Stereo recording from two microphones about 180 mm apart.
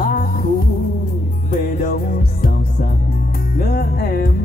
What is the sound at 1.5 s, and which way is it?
Music, 55° left (ahead or behind).